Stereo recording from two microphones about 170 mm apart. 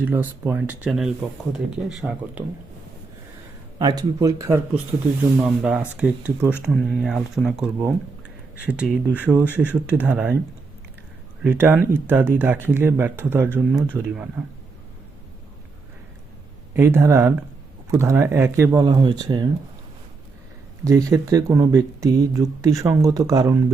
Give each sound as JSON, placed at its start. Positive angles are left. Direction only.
{"t": 0.0, "sound": "speech", "side_deg": -10}
{"t": 3.8, "sound": "speech", "side_deg": -25}
{"t": 11.4, "sound": "speech", "side_deg": -10}
{"t": 16.7, "sound": "speech", "side_deg": -15}
{"t": 20.8, "sound": "speech", "side_deg": -20}